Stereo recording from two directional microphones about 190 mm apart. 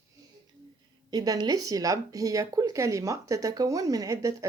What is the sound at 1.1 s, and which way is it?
Speech, 20° right (ahead or behind).